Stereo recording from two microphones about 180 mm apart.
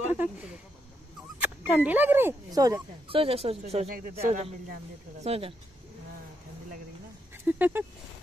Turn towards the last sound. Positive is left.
turn(degrees=-10)  # may be behind; listen again after turning